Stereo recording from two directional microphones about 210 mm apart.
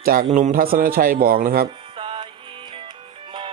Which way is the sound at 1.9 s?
25° right (ahead or behind).